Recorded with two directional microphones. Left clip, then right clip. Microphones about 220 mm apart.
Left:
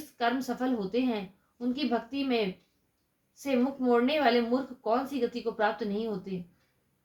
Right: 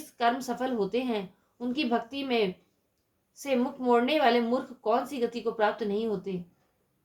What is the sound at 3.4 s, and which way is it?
A woman's voice, 40° right (ahead or behind).